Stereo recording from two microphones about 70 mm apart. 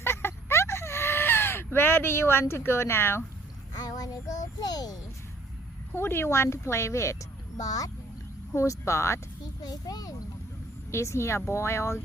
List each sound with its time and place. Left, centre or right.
0.0 s a sound: left
3.8 s child singing: left
5.9 s speech: left
7.6 s a child's voice: left
8.5 s speech: left
9.6 s a child's voice: left
10.9 s speech: left